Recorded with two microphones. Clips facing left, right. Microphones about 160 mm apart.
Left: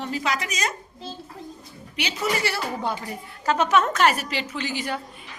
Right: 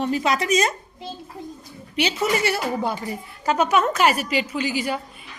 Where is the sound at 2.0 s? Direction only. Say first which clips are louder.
Right 4 dB; 20° right (ahead or behind).